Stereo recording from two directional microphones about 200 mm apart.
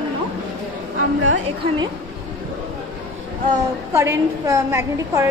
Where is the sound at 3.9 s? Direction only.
15° right (ahead or behind).